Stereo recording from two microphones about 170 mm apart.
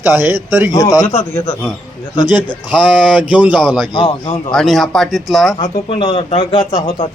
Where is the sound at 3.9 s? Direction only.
25° left (ahead or behind).